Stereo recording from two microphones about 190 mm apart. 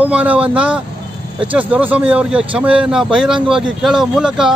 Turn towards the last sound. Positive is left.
turn(degrees=-5)  # may be behind; listen again after turning